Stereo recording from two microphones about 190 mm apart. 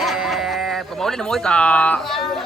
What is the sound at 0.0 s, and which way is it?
Speech, centre (ahead or behind).